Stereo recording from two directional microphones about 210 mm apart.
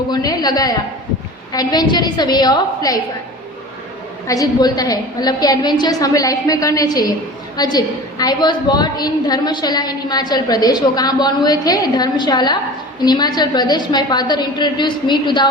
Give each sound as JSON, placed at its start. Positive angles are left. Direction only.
{"t": 0.1, "sound": "a woman's voice", "side_deg": 20}
{"t": 4.3, "sound": "a woman's voice", "side_deg": 15}